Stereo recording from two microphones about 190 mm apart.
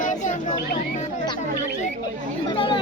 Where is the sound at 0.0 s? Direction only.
40° left (ahead or behind).